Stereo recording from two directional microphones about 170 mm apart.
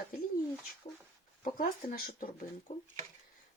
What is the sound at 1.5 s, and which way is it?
Speech, 55° left (ahead or behind).